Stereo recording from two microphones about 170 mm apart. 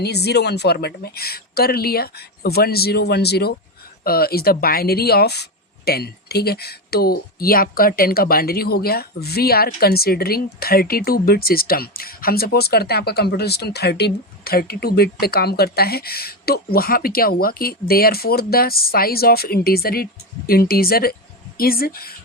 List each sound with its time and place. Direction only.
0.0 s speech: 75° left (ahead or behind)
4.0 s speech: 65° left (ahead or behind)